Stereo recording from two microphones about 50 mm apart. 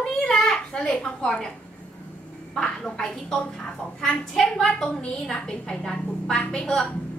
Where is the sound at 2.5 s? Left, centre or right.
Centre.